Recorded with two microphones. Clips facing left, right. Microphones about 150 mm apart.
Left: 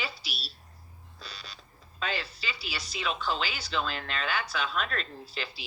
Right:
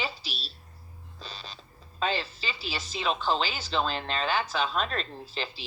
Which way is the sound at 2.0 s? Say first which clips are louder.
Right 5 dB; 35° right (ahead or behind).